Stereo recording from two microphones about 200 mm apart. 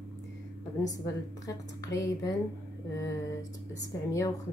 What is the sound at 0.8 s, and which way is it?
Speech, 15° left (ahead or behind).